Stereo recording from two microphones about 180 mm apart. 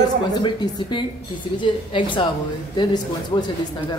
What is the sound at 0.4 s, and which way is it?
Speech, 25° left (ahead or behind).